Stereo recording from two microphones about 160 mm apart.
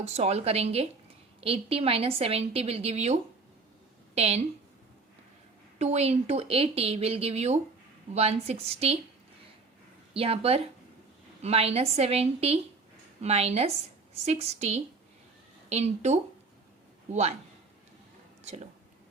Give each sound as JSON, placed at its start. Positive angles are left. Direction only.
{"t": 0.0, "sound": "a woman's voice", "side_deg": -40}
{"t": 5.8, "sound": "a woman's voice", "side_deg": -40}
{"t": 10.2, "sound": "a woman's voice", "side_deg": -35}
{"t": 18.4, "sound": "speech", "side_deg": -45}